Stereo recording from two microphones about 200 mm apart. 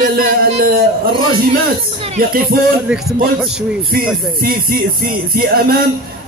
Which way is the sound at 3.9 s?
45° right (ahead or behind).